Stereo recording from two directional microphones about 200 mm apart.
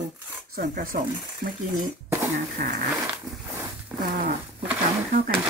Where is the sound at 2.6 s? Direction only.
45° right (ahead or behind).